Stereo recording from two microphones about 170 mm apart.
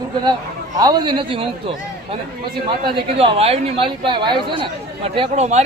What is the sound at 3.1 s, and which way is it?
Speech, 35° right (ahead or behind).